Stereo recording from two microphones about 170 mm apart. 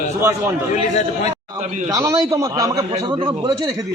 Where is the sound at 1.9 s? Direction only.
20° right (ahead or behind).